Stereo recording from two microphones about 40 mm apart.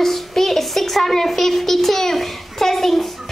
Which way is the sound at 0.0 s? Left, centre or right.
Centre.